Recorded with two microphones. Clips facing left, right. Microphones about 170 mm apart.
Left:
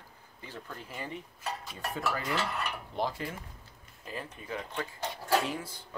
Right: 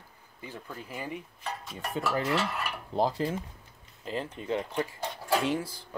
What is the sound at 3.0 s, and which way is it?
Speech, 30° right (ahead or behind).